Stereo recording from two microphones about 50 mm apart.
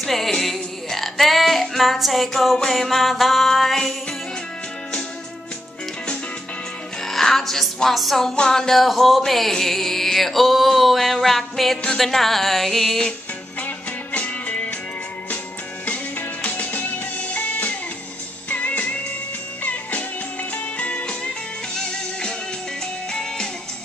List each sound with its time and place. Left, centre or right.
0.0 s music: centre
7.0 s music: centre
13.6 s music: left
15.8 s music: left; by 23.5 s centre